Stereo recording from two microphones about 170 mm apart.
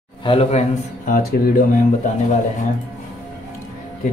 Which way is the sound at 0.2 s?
35° left (ahead or behind).